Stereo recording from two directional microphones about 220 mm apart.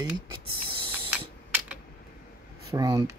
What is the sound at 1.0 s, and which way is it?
Typing, 5° right (ahead or behind).